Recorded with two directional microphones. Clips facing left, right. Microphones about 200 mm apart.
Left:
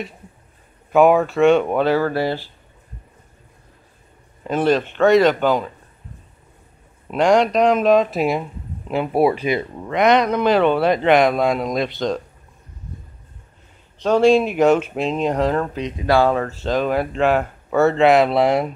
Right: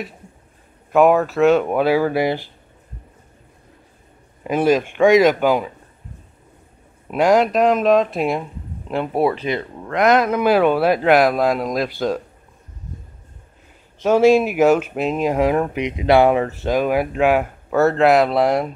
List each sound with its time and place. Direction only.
0.9 s speech: centre (ahead or behind)
4.4 s speech: 10° right (ahead or behind)
7.1 s speech: 5° right (ahead or behind); by 9.9 s 10° left (ahead or behind)
9.9 s speech: centre (ahead or behind)
14.0 s speech: 5° right (ahead or behind)